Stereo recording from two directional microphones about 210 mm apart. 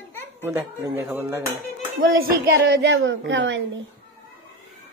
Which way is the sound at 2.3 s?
50° right (ahead or behind).